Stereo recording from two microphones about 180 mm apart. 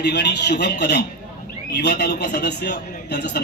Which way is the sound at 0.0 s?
70° left (ahead or behind).